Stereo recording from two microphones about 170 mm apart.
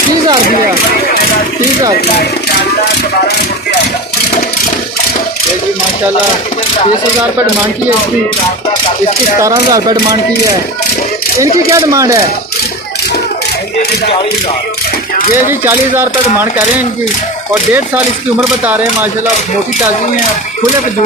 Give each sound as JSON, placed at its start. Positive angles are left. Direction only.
{"t": 9.4, "sound": "speech", "side_deg": -20}
{"t": 11.7, "sound": "speech", "side_deg": -20}
{"t": 15.6, "sound": "mechanisms", "side_deg": -15}